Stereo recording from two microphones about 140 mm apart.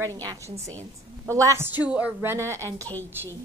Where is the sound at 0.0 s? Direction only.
25° right (ahead or behind).